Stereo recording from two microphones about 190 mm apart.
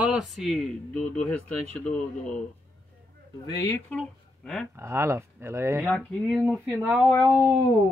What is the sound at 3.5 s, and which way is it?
Speech, 20° left (ahead or behind).